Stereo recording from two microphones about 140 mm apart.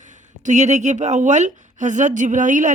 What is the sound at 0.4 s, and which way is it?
A woman's voice, 60° right (ahead or behind).